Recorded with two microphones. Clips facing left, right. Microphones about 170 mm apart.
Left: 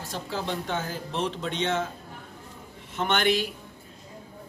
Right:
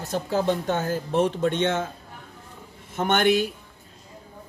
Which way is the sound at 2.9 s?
50° right (ahead or behind).